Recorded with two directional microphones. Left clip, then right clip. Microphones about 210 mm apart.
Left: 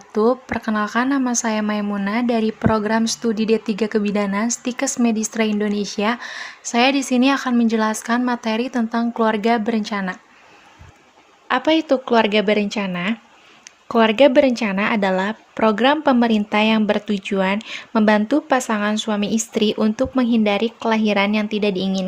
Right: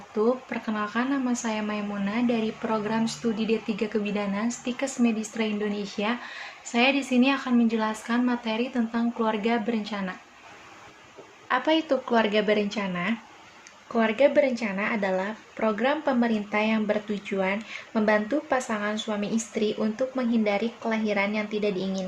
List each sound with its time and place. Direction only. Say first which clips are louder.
0.1 s speech: left 7 dB; 55° left (ahead or behind)
11.4 s a woman's voice: left 6 dB; 35° left (ahead or behind)